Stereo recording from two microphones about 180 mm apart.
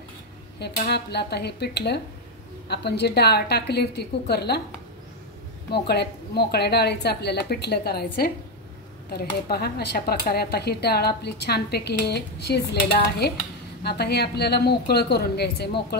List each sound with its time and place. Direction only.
0.6 s speech: 65° left (ahead or behind)
5.7 s speech: 65° left (ahead or behind)
13.8 s speech: 65° left (ahead or behind)